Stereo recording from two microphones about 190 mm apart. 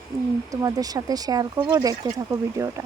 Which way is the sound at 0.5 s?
20° right (ahead or behind).